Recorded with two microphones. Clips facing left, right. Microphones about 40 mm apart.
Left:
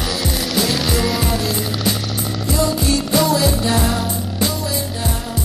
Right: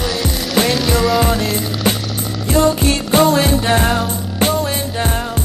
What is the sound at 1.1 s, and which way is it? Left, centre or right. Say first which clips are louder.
Music: right 5 dB; centre.